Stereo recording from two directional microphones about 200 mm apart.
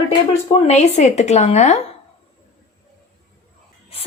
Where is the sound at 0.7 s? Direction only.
35° left (ahead or behind).